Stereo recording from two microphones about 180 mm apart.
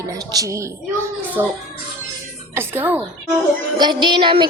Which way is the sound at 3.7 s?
25° right (ahead or behind).